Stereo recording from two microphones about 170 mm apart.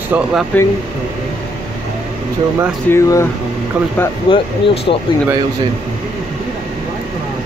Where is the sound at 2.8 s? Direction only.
15° left (ahead or behind).